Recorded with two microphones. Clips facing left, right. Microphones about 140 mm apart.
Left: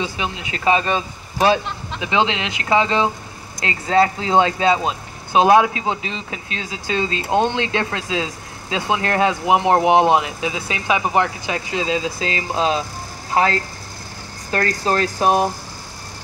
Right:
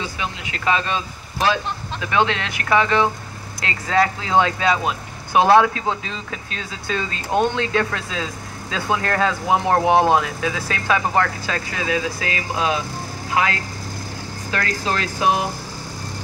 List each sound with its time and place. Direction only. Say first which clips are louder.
0.0 s speech: left 3 dB; 25° left (ahead or behind); by 15.4 s 45° left (ahead or behind)